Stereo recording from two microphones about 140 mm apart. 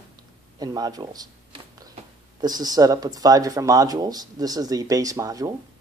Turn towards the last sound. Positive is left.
turn(degrees=-25)  # may be behind; listen again after turning